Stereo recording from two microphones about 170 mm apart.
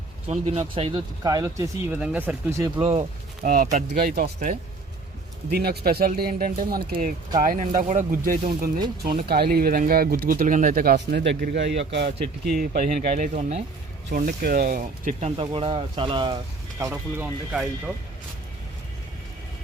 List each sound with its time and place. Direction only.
0.3 s speech: 40° right (ahead or behind); by 2.8 s 15° right (ahead or behind)
2.8 s speech: 35° right (ahead or behind)
3.4 s speech: 45° right (ahead or behind)
3.9 s speech: 65° right (ahead or behind)
5.5 s speech: 65° right (ahead or behind); by 12.1 s 85° right
12.5 s speech: 50° right (ahead or behind)
14.4 s speech: 65° right (ahead or behind)
15.4 s speech: 30° right (ahead or behind)
16.8 s speech: 10° right (ahead or behind)